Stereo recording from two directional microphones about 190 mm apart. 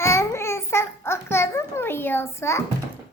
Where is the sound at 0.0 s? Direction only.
15° left (ahead or behind).